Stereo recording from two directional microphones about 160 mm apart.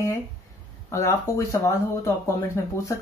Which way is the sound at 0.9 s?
20° left (ahead or behind).